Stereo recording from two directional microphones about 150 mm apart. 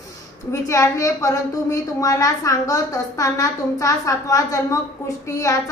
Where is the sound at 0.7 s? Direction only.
20° left (ahead or behind).